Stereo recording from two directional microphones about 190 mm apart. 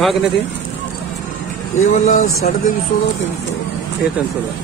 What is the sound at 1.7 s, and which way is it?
Speech, 40° left (ahead or behind).